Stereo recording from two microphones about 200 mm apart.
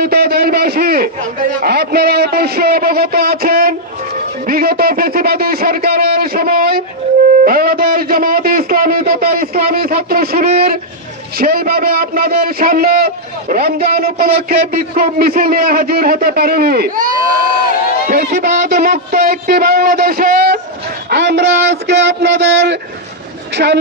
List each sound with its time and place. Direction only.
0.0 s a man's voice: 50° right (ahead or behind)
7.4 s a sound: 45° right (ahead or behind)
11.3 s a man's voice: 50° right (ahead or behind)
18.1 s a man's voice: 45° right (ahead or behind)
21.1 s a sound: 55° right (ahead or behind)
23.5 s a woman's voice: 55° right (ahead or behind)